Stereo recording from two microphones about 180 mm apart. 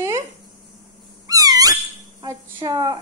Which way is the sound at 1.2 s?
20° right (ahead or behind).